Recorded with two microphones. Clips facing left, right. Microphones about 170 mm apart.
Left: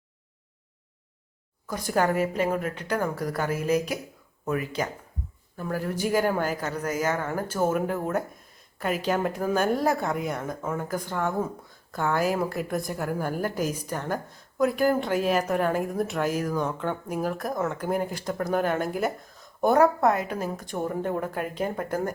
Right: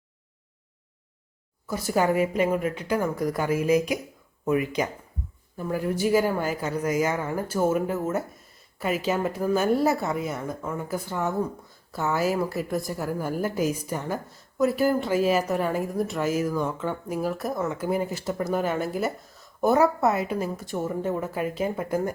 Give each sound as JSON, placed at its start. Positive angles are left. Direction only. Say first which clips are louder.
{"t": 1.6, "sound": "a woman's voice", "louder": "right 1 dB", "side_deg": -5}
{"t": 10.8, "sound": "a woman's voice", "louder": "right 2 dB", "side_deg": -10}